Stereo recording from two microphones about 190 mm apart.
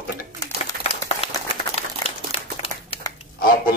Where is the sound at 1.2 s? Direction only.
30° left (ahead or behind).